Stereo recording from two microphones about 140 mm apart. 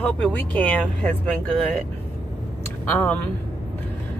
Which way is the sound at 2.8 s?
10° left (ahead or behind).